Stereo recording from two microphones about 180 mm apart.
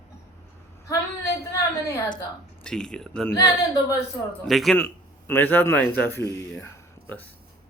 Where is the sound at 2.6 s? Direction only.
5° left (ahead or behind).